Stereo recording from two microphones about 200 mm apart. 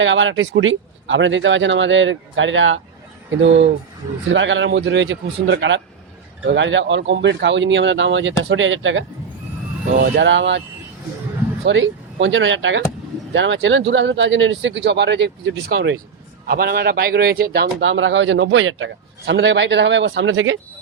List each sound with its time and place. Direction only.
0.0 s a man's voice: 70° right (ahead or behind)
11.6 s speech: 65° right (ahead or behind)
16.5 s a man's voice: 50° right (ahead or behind); by 20.6 s 75° right (ahead or behind)